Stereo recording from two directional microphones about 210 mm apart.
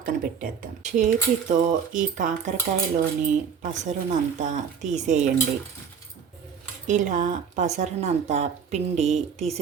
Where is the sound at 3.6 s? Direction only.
35° right (ahead or behind).